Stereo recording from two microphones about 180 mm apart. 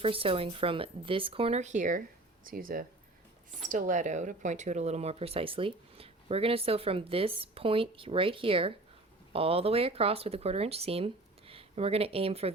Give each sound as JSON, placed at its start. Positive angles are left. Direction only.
{"t": 0.0, "sound": "speech", "side_deg": -30}